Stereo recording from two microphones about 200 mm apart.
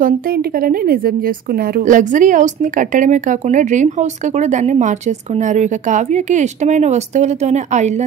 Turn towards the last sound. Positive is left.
turn(degrees=-35)  # may be behind; listen again after turning